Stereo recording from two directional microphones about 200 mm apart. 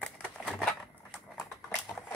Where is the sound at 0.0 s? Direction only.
Centre (ahead or behind).